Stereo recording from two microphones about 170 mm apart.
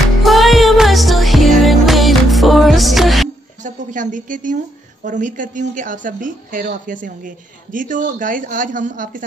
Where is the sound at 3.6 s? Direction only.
50° right (ahead or behind).